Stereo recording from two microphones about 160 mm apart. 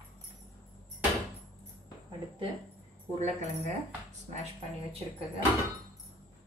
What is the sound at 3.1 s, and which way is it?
Speech, 45° right (ahead or behind).